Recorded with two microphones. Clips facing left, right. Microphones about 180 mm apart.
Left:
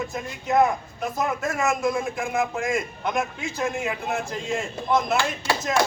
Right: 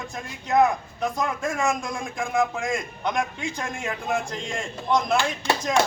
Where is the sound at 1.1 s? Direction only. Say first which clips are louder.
Left 3 dB; 5° left (ahead or behind).